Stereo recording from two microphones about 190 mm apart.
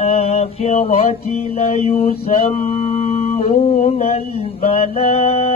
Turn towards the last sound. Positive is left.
turn(degrees=35)  # may be behind; listen again after turning